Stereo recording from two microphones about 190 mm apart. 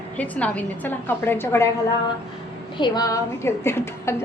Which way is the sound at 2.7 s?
25° left (ahead or behind).